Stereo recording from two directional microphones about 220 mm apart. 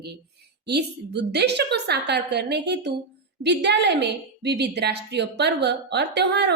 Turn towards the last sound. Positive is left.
turn(degrees=-50)  # may be behind; listen again after turning